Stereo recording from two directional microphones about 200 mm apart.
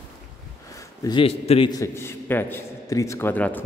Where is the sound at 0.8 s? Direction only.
20° left (ahead or behind).